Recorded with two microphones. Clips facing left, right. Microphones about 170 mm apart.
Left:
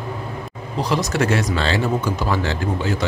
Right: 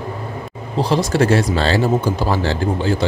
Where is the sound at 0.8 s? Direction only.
30° right (ahead or behind).